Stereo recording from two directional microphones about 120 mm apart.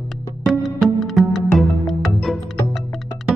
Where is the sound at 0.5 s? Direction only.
Centre (ahead or behind).